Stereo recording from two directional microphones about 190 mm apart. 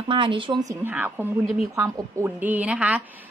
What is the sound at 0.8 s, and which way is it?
A woman's voice, 10° right (ahead or behind).